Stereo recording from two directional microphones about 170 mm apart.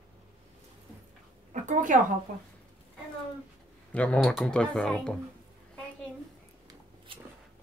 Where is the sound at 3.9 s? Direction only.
5° left (ahead or behind).